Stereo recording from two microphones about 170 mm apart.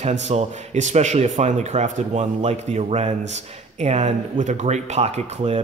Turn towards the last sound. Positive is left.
turn(degrees=-40)  # may be behind; listen again after turning